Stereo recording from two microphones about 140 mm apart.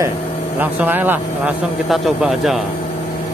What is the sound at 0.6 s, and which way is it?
Speech, 15° right (ahead or behind).